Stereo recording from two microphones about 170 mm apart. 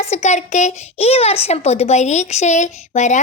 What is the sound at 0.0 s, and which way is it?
A woman's voice, 40° left (ahead or behind).